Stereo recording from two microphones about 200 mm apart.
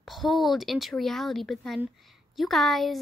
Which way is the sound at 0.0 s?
Centre (ahead or behind).